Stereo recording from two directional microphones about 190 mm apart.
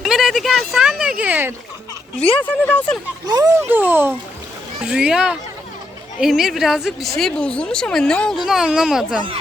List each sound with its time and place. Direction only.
0.0 s a sound: centre (ahead or behind)
2.4 s speech: 10° left (ahead or behind)
3.2 s speech: 20° right (ahead or behind)
3.7 s speech: 10° right (ahead or behind)